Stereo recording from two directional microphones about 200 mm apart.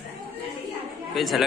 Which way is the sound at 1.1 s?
Centre (ahead or behind).